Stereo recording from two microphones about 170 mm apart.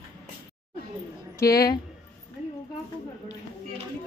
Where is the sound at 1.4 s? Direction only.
20° left (ahead or behind).